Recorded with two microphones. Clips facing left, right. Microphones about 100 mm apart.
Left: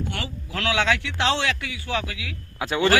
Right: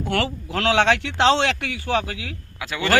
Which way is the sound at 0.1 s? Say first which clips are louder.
Right 8 dB; 60° right (ahead or behind).